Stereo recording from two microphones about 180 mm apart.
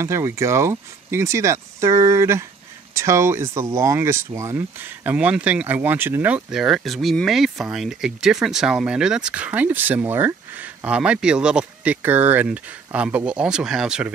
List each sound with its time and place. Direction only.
0.0 s speech: 15° right (ahead or behind)